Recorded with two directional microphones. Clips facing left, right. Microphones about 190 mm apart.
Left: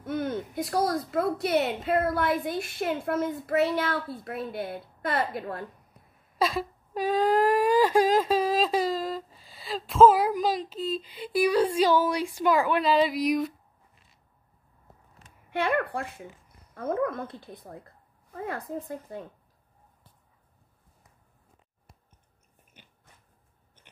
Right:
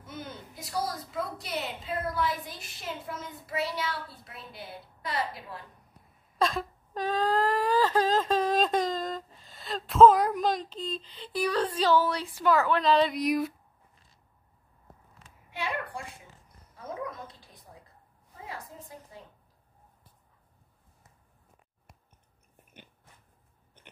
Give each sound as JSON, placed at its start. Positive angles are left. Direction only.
{"t": 0.0, "sound": "speech", "side_deg": 55}
{"t": 6.3, "sound": "wail", "side_deg": 5}
{"t": 15.5, "sound": "speech", "side_deg": 55}